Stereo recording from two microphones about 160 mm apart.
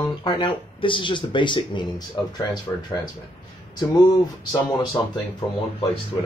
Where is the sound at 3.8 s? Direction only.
25° left (ahead or behind).